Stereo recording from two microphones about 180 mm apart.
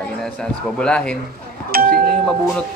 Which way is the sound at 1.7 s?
55° right (ahead or behind).